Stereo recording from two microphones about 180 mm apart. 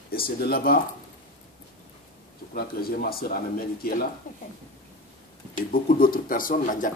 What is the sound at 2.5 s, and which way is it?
A man's voice, 55° left (ahead or behind).